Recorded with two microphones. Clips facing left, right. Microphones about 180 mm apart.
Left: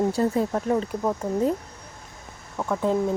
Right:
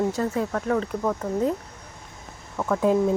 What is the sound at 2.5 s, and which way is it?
Speech, 5° left (ahead or behind).